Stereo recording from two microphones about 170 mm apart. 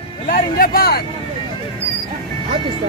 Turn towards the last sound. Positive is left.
turn(degrees=60)  # may be behind; listen again after turning